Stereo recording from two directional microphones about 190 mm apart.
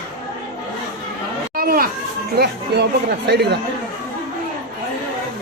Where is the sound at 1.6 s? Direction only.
50° right (ahead or behind).